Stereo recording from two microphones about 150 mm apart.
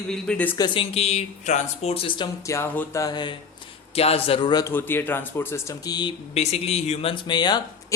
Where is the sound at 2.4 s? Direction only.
20° left (ahead or behind).